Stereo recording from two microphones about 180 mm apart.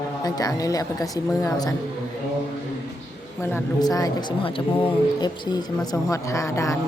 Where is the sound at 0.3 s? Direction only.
20° left (ahead or behind).